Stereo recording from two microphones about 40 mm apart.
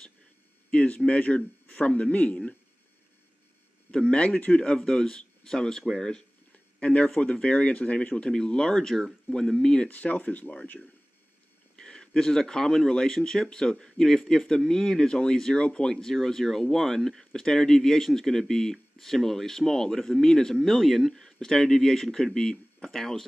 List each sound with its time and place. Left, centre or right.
0.7 s speech: left
3.9 s speech: centre
6.5 s a sound: left
7.2 s speech: left
8.3 s speech: centre
9.8 s speech: left
11.7 s speech: centre
20.6 s speech: centre